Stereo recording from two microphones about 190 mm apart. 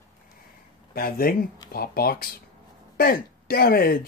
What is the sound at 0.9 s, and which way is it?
Speech, 50° left (ahead or behind).